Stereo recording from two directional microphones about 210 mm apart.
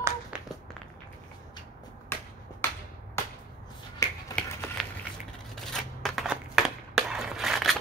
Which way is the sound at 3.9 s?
15° left (ahead or behind).